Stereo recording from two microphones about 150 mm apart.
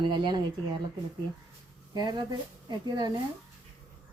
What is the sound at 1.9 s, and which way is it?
A woman's voice, 30° right (ahead or behind).